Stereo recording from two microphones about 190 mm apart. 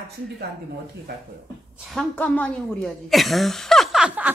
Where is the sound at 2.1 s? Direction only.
10° left (ahead or behind).